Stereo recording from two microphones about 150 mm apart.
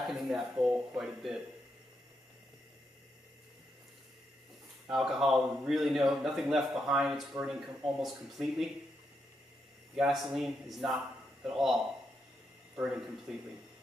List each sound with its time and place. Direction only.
0.1 s a man's voice: centre (ahead or behind)
4.8 s a man's voice: centre (ahead or behind)
9.9 s a man's voice: centre (ahead or behind)
13.3 s a man's voice: 5° right (ahead or behind)